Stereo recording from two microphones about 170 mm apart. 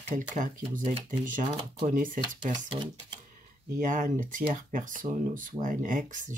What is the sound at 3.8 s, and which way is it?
Speech, 50° right (ahead or behind).